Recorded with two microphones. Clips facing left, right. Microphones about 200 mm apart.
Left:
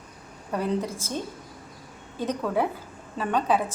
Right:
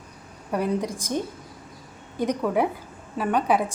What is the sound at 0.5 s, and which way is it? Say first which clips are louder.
A woman's voice: right 2 dB; 15° right (ahead or behind).